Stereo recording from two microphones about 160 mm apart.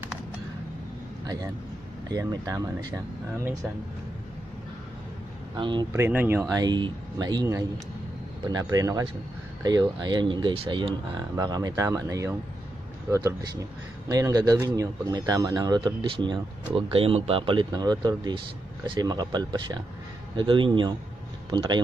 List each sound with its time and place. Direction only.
1.2 s a man's voice: 25° right (ahead or behind)
5.6 s a man's voice: 30° right (ahead or behind)
5.9 s speech: 15° right (ahead or behind)
6.5 s a man's voice: 25° right (ahead or behind)